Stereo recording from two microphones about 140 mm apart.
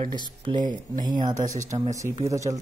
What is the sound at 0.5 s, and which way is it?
Speech, 30° right (ahead or behind).